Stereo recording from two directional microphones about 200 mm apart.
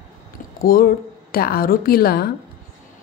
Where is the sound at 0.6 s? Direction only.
45° left (ahead or behind).